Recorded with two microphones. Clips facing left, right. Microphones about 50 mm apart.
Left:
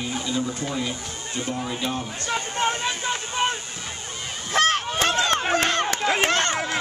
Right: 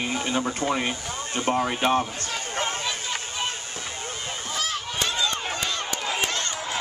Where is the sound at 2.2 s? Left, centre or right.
Left.